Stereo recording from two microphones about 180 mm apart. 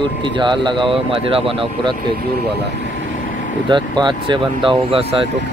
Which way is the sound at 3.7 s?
25° right (ahead or behind).